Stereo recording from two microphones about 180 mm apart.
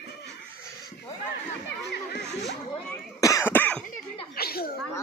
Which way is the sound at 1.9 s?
70° left (ahead or behind).